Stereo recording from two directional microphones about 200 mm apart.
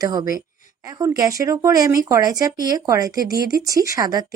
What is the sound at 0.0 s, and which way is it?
Speech, 20° right (ahead or behind).